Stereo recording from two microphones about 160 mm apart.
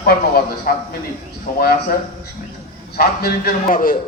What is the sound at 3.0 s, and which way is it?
Speech, 70° left (ahead or behind).